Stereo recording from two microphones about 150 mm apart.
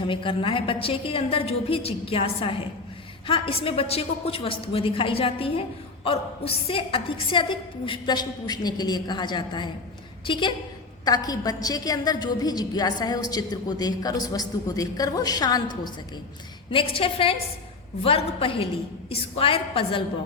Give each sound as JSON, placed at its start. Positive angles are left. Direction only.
{"t": 0.1, "sound": "a woman's voice", "side_deg": 35}
{"t": 16.7, "sound": "a woman's voice", "side_deg": 35}